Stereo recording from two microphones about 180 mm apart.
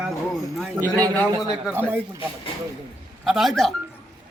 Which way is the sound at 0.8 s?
20° right (ahead or behind).